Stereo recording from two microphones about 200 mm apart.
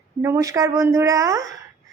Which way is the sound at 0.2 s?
15° right (ahead or behind).